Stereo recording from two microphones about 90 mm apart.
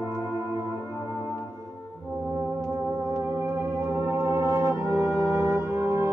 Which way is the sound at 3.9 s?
30° right (ahead or behind).